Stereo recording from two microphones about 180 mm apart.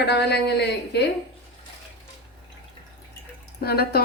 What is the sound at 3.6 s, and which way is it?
Speech, 60° left (ahead or behind).